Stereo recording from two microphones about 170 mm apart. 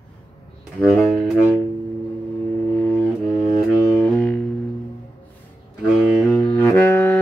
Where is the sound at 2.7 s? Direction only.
10° left (ahead or behind).